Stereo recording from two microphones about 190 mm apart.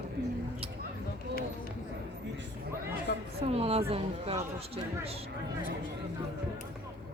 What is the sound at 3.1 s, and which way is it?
Speech, 50° left (ahead or behind).